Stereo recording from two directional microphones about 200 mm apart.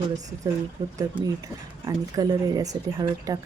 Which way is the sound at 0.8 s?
15° right (ahead or behind).